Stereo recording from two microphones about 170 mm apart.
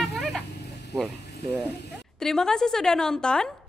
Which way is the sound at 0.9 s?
Centre (ahead or behind).